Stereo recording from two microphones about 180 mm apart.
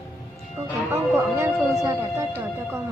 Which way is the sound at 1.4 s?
15° right (ahead or behind).